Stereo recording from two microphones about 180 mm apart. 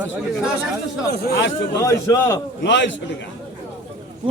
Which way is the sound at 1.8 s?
15° left (ahead or behind).